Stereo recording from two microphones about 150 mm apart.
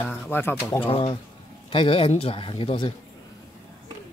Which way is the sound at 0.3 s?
15° left (ahead or behind).